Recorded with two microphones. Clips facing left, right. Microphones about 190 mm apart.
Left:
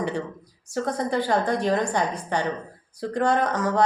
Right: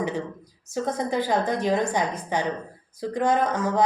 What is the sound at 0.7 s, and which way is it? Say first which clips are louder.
Speech: left 1 dB; 20° right (ahead or behind).